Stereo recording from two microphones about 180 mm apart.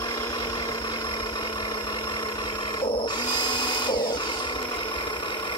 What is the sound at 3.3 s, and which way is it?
Drill, 25° left (ahead or behind).